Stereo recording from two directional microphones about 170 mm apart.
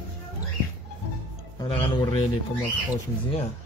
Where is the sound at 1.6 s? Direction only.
35° left (ahead or behind).